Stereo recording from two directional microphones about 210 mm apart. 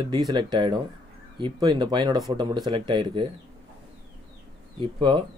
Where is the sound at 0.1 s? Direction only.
20° right (ahead or behind).